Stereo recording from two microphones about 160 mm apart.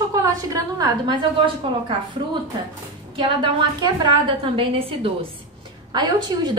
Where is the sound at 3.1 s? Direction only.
30° right (ahead or behind).